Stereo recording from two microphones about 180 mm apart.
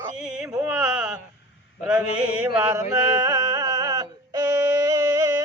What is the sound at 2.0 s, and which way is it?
Music, 10° right (ahead or behind).